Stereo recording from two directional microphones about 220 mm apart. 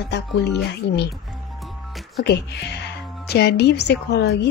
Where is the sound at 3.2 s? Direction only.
50° left (ahead or behind).